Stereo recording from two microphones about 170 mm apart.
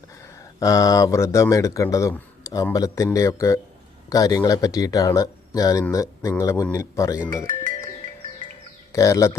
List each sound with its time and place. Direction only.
0.6 s speech: 20° left (ahead or behind)
8.9 s speech: 20° left (ahead or behind)